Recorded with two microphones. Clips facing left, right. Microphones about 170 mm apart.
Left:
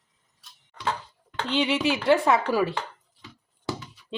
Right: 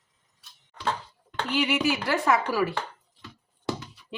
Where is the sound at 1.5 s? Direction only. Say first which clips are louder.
Left 1 dB; 25° left (ahead or behind).